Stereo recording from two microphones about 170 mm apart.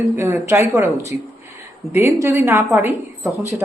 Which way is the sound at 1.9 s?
15° right (ahead or behind).